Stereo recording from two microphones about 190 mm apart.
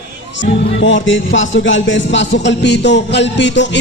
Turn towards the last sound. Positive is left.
turn(degrees=70)  # may be behind; listen again after turning